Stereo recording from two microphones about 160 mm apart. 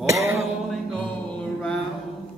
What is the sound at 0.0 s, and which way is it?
Music, 20° right (ahead or behind).